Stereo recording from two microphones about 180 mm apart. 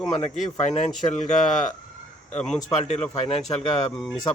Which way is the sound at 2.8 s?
35° left (ahead or behind).